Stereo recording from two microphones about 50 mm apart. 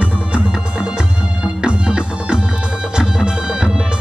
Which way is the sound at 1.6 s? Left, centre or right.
Right.